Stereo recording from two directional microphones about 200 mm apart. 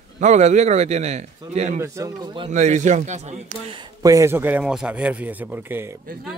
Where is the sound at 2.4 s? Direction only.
35° right (ahead or behind).